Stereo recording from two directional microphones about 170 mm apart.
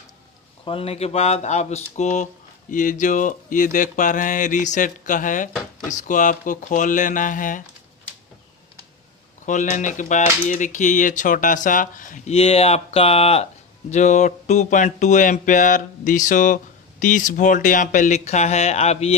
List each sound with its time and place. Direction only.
0.7 s speech: 35° left (ahead or behind); by 7.6 s 50° left (ahead or behind)
9.5 s speech: 45° left (ahead or behind)